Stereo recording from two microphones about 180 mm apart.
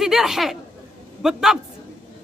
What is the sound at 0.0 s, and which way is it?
A man's voice, centre (ahead or behind).